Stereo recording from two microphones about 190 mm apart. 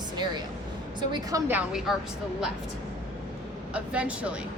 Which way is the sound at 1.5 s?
5° right (ahead or behind).